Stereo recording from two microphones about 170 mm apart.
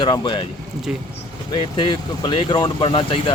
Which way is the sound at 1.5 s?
25° left (ahead or behind).